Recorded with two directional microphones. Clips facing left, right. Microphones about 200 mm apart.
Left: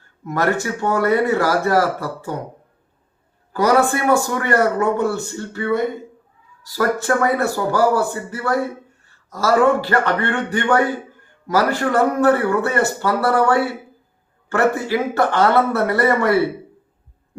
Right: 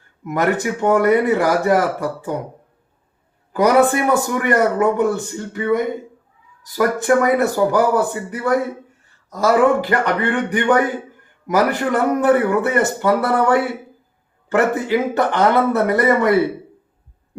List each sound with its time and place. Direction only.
0.3 s a man's voice: 20° right (ahead or behind)
3.5 s a man's voice: 20° right (ahead or behind)